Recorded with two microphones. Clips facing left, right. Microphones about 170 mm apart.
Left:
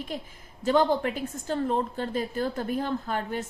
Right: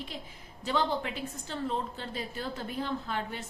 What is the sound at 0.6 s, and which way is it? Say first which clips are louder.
A woman's voice: left 7 dB; 50° left (ahead or behind).